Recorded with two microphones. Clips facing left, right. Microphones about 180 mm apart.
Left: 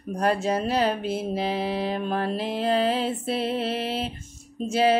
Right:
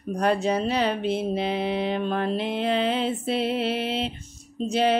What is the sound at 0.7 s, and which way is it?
Speech, 45° left (ahead or behind).